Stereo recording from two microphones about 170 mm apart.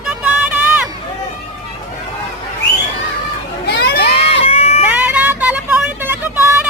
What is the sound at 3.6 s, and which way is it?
Crowd, 80° left.